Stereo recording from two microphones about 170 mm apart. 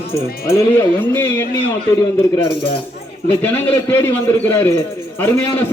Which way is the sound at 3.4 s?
10° left (ahead or behind).